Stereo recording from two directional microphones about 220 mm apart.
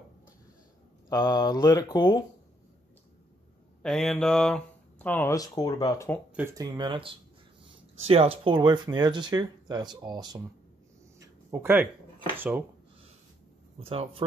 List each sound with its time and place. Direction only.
1.0 s speech: 15° left (ahead or behind)
3.8 s speech: centre (ahead or behind)
6.3 s speech: 15° right (ahead or behind)
11.1 s a sound: 10° right (ahead or behind)
12.4 s speech: 10° right (ahead or behind)
13.7 s speech: 25° right (ahead or behind)